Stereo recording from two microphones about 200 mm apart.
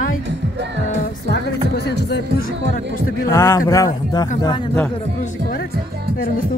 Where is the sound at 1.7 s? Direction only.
55° left (ahead or behind).